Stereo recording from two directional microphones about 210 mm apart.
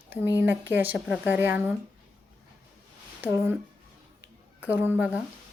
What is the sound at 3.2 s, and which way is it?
Speech, 10° right (ahead or behind).